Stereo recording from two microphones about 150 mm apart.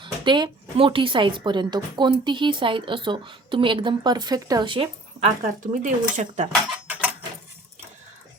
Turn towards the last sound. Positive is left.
turn(degrees=-10)  # may be behind; listen again after turning